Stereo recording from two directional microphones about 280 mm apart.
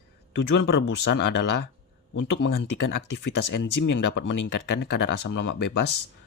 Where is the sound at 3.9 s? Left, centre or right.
Left.